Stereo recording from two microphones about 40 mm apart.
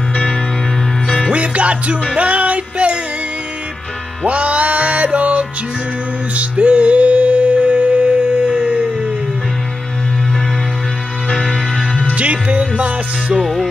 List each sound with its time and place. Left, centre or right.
1.3 s music: right
4.3 s music: right
11.4 s music: centre
12.2 s music: right